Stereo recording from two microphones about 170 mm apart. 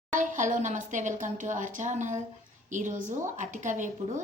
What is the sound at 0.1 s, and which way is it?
A woman's voice, 45° right (ahead or behind).